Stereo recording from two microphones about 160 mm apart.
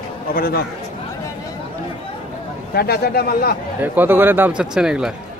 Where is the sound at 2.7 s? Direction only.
80° left.